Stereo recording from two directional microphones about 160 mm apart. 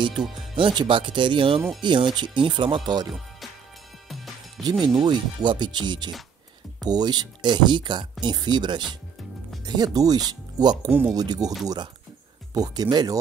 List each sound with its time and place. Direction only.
0.6 s speech: 30° right (ahead or behind)
4.8 s speech: 25° right (ahead or behind)
10.9 s speech: 10° right (ahead or behind)
11.1 s speech: 25° right (ahead or behind)